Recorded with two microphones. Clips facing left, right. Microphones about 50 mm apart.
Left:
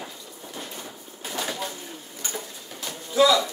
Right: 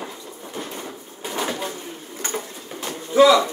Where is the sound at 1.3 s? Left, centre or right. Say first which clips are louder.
Right 4 dB; right.